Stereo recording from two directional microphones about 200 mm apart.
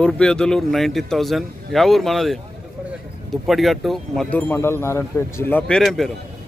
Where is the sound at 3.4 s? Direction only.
Centre (ahead or behind).